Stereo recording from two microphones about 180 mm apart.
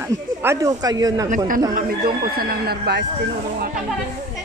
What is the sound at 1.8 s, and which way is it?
Speech, 55° right (ahead or behind).